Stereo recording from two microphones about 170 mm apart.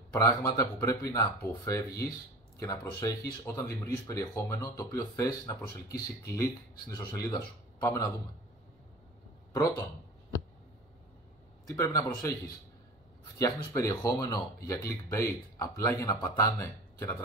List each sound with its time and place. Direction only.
0.1 s speech: 20° left (ahead or behind)
11.6 s speech: 15° left (ahead or behind)
13.4 s speech: 20° left (ahead or behind)